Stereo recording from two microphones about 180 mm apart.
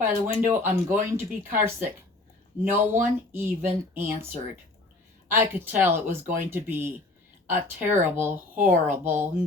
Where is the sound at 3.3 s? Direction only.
10° right (ahead or behind).